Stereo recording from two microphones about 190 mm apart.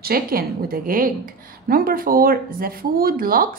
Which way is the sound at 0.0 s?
50° right (ahead or behind).